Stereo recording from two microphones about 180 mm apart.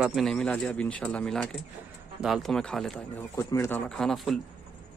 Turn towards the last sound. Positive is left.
turn(degrees=0)  # may be behind; listen again after turning